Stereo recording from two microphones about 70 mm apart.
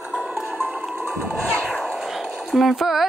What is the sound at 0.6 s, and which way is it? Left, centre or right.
Music, right.